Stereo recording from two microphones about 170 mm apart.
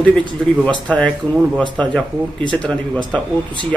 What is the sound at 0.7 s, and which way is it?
A man's voice, 5° left (ahead or behind).